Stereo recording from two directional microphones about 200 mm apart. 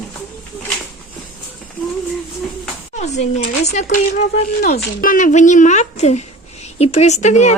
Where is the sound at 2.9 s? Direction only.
35° left (ahead or behind).